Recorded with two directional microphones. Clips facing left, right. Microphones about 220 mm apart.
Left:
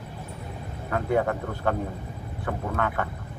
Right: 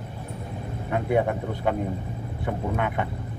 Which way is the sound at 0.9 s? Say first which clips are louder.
Right 1 dB; 15° right (ahead or behind).